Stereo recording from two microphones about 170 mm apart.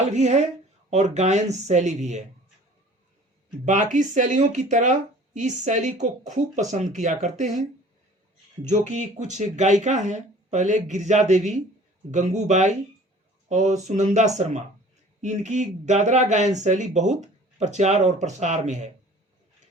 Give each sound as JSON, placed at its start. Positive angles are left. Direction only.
{"t": 0.0, "sound": "speech", "side_deg": -40}
{"t": 3.7, "sound": "speech", "side_deg": -45}
{"t": 8.6, "sound": "speech", "side_deg": -45}